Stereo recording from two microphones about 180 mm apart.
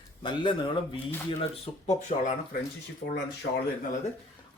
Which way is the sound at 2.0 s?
45° left (ahead or behind).